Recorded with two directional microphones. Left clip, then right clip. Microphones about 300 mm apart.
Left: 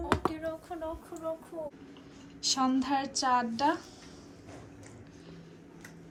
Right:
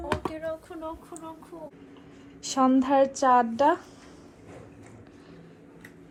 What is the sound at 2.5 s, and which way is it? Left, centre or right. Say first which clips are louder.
Speech: right 8 dB; centre.